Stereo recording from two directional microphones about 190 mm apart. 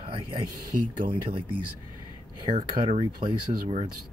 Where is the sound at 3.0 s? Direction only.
25° right (ahead or behind).